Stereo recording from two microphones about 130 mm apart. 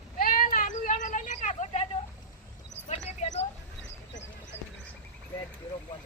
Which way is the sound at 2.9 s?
55° left (ahead or behind).